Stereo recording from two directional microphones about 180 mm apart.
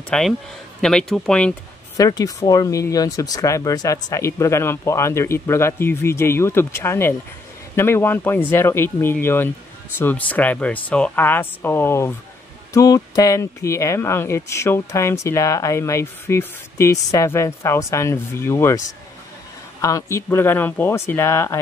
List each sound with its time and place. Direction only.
0.1 s a man's voice: 5° left (ahead or behind)
2.0 s speech: 20° left (ahead or behind)
19.8 s speech: 20° left (ahead or behind)